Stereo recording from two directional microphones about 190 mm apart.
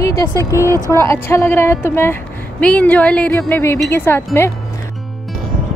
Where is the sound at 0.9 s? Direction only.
15° left (ahead or behind).